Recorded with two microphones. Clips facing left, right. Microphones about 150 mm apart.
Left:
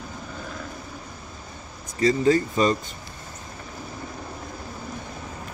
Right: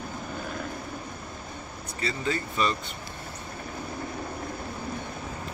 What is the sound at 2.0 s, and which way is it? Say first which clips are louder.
Speech: left 11 dB; 40° left (ahead or behind).